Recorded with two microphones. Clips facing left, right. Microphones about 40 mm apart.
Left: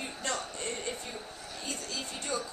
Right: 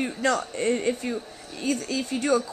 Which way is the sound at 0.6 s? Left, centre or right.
Right.